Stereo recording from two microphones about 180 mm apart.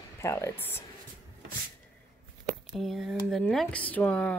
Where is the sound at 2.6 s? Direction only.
Centre (ahead or behind).